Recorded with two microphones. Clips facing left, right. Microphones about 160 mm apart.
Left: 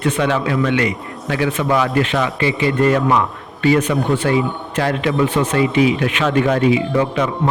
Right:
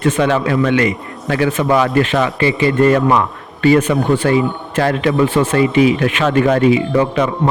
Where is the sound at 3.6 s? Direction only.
50° right (ahead or behind).